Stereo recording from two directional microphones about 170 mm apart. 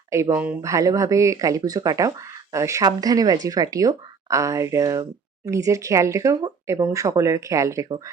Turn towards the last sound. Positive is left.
turn(degrees=-20)  # may be behind; listen again after turning